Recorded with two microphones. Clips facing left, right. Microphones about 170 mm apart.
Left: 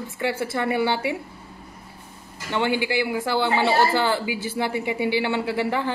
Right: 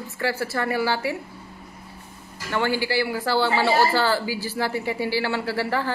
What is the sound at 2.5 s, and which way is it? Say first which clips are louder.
Speech: even; 20° left (ahead or behind).